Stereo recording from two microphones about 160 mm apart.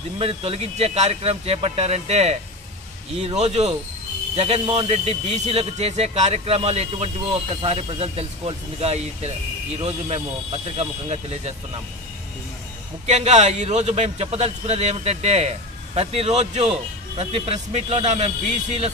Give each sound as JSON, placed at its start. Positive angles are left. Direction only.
{"t": 0.2, "sound": "a man's voice", "side_deg": -35}
{"t": 13.0, "sound": "a man's voice", "side_deg": -45}